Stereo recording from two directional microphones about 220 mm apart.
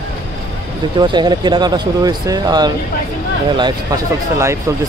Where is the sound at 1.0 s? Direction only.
20° right (ahead or behind).